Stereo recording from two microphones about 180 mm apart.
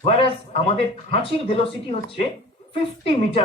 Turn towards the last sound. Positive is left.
turn(degrees=30)  # may be behind; listen again after turning